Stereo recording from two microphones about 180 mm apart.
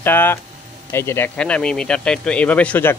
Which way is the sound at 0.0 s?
10° left (ahead or behind).